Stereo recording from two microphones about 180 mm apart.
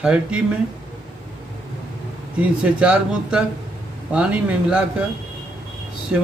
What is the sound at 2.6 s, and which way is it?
Speech, 5° right (ahead or behind).